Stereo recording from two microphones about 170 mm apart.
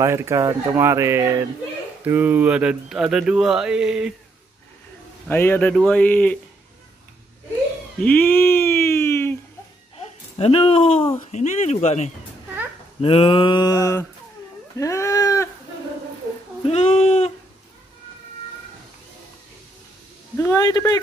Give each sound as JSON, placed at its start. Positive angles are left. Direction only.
{"t": 0.0, "sound": "speech", "side_deg": -15}
{"t": 5.3, "sound": "speech", "side_deg": 10}
{"t": 8.0, "sound": "a sound", "side_deg": 10}
{"t": 10.0, "sound": "speech", "side_deg": 35}
{"t": 13.0, "sound": "mantra", "side_deg": 30}
{"t": 14.8, "sound": "speech", "side_deg": 20}
{"t": 16.6, "sound": "speech", "side_deg": 35}
{"t": 20.3, "sound": "mantra", "side_deg": 15}